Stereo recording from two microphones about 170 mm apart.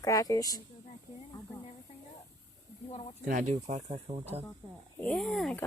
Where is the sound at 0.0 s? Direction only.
20° left (ahead or behind).